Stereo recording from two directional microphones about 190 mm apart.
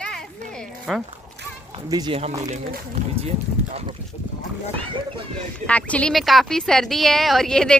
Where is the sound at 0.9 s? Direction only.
Centre (ahead or behind).